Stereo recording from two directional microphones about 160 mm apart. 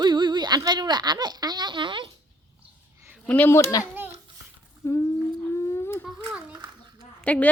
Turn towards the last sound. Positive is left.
turn(degrees=10)  # may be behind; listen again after turning